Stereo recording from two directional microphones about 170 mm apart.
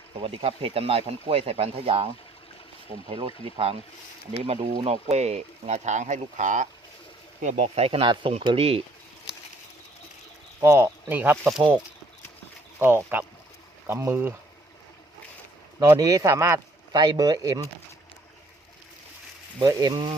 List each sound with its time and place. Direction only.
0.2 s speech: 35° right (ahead or behind)
3.1 s speech: 30° right (ahead or behind)
10.6 s speech: 15° right (ahead or behind); by 11.8 s centre (ahead or behind)
12.8 s speech: 10° right (ahead or behind)
15.8 s speech: 20° right (ahead or behind)
19.5 s speech: 20° right (ahead or behind)